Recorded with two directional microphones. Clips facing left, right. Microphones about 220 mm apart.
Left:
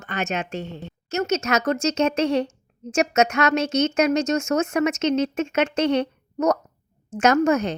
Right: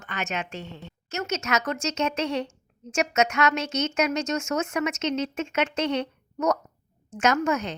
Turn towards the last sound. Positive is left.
turn(degrees=40)  # may be behind; listen again after turning